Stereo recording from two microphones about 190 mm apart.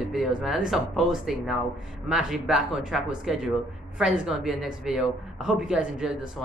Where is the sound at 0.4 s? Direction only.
Centre (ahead or behind).